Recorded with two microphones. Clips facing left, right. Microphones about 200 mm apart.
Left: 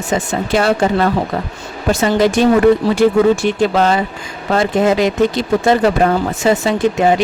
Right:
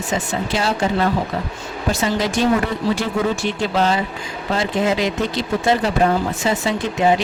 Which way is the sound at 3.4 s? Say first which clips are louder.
Left 5 dB; 55° left (ahead or behind).